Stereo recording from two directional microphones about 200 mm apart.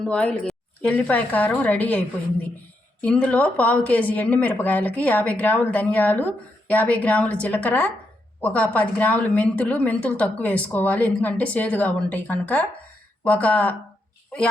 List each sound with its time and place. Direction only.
0.0 s speech: 5° left (ahead or behind)